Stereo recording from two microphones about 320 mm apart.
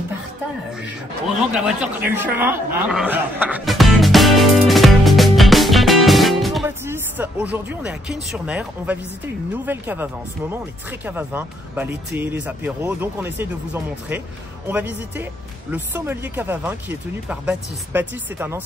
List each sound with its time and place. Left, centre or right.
1.5 s speech: centre
14.7 s speech: centre